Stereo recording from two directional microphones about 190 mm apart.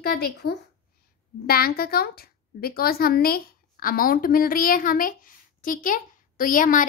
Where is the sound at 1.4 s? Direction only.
50° left (ahead or behind).